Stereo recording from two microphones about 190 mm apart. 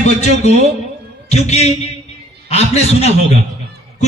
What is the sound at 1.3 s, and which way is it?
A man's voice, 35° left (ahead or behind).